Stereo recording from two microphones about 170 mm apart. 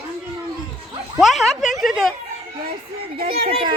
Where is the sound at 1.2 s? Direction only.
Centre (ahead or behind).